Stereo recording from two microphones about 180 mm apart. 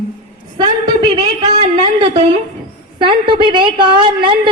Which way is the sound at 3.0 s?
25° right (ahead or behind).